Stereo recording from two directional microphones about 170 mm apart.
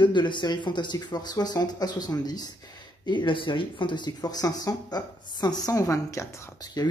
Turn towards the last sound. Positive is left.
turn(degrees=25)  # may be behind; listen again after turning